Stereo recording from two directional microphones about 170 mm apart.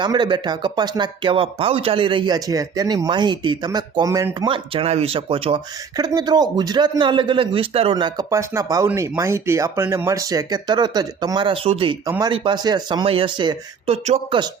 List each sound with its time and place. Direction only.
0.0 s speech: 25° right (ahead or behind)
4.4 s speech: 30° right (ahead or behind)
12.0 s speech: 15° right (ahead or behind)
12.3 s speech: 30° right (ahead or behind)